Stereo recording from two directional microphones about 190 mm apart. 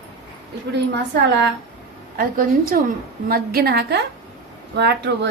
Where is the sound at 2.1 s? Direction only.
45° right (ahead or behind).